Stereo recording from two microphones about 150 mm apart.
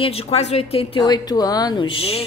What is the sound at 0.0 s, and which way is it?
A woman's voice, 40° left (ahead or behind).